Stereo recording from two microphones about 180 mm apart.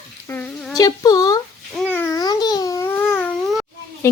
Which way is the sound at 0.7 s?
20° left (ahead or behind).